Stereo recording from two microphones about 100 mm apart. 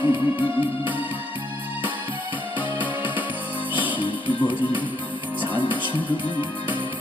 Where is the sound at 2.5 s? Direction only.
15° right (ahead or behind).